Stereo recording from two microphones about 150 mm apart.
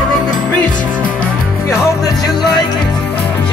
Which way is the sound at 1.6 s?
20° left (ahead or behind).